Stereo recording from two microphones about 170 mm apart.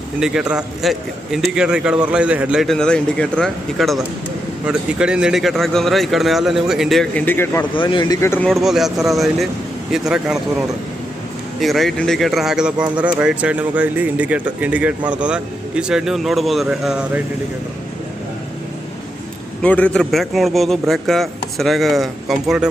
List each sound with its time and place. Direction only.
0.2 s a man's voice: 5° right (ahead or behind); by 7.7 s 15° left (ahead or behind)
7.8 s speech: 30° left (ahead or behind)
8.6 s a man's voice: centre (ahead or behind)
11.6 s a man's voice: centre (ahead or behind)
19.6 s a man's voice: 5° left (ahead or behind)